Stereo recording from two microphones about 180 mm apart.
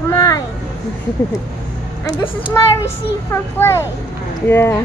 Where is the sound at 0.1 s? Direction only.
20° left (ahead or behind).